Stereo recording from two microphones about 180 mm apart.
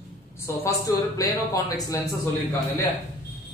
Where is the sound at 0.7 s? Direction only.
20° left (ahead or behind).